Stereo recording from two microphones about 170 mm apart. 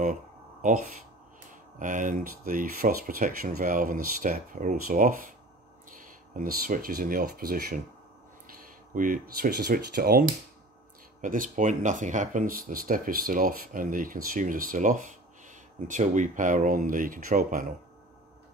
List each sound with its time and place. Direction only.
0.0 s a sound: 45° right (ahead or behind)
1.5 s speech: 50° right (ahead or behind)
8.9 s speech: 55° right (ahead or behind)
11.1 s speech: 50° right (ahead or behind)